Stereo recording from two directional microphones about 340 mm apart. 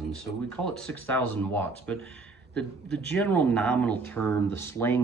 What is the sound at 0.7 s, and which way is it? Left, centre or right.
Speech, centre.